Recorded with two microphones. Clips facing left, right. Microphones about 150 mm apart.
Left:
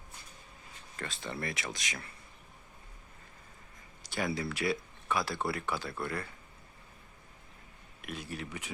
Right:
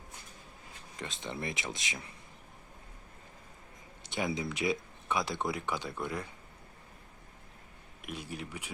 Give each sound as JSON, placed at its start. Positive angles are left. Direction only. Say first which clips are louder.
{"t": 0.9, "sound": "speech", "louder": "even", "side_deg": -20}
{"t": 4.0, "sound": "a sound", "louder": "even", "side_deg": -20}
{"t": 4.4, "sound": "speech", "louder": "even", "side_deg": -20}
{"t": 8.0, "sound": "speech", "louder": "even", "side_deg": -10}